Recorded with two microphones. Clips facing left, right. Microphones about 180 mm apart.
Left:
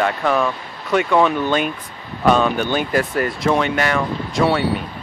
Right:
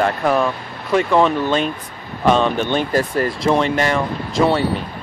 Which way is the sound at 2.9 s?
30° right (ahead or behind).